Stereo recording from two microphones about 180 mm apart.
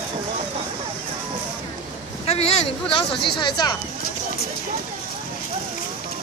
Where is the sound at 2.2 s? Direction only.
35° left (ahead or behind).